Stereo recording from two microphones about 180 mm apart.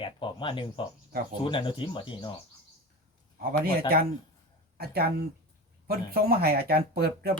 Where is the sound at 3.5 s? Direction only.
55° right (ahead or behind).